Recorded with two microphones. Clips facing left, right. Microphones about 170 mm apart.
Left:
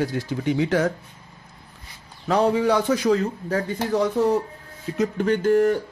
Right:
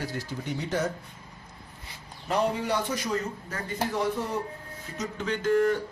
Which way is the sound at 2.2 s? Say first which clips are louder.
Left 8 dB; 90° left.